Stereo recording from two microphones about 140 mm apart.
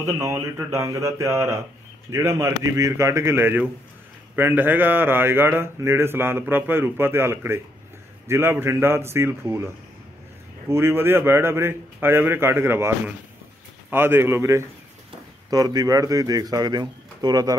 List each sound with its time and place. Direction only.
0.0 s a man's voice: 20° right (ahead or behind)
10.7 s speech: 15° right (ahead or behind)